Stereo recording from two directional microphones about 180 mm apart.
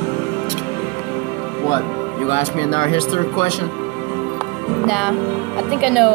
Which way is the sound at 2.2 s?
35° left (ahead or behind).